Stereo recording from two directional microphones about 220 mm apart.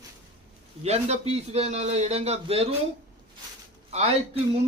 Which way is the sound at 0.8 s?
30° right (ahead or behind).